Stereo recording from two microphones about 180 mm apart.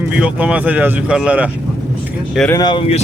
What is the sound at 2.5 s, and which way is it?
Speech, 25° left (ahead or behind).